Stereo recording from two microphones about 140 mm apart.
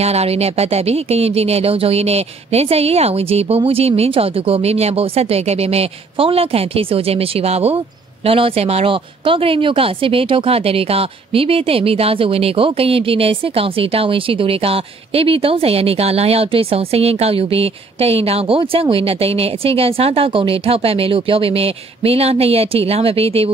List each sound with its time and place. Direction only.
0.0 s speech: 50° right (ahead or behind)